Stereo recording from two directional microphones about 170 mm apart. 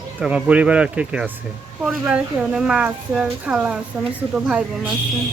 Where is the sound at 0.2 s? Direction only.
5° right (ahead or behind).